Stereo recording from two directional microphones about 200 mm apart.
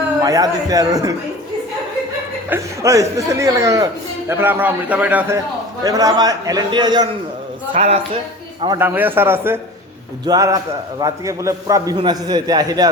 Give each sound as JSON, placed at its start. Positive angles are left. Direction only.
{"t": 0.2, "sound": "a man's voice", "side_deg": -20}
{"t": 2.5, "sound": "a man's voice", "side_deg": -15}
{"t": 8.6, "sound": "a man's voice", "side_deg": -20}
{"t": 8.9, "sound": "a man's voice", "side_deg": -10}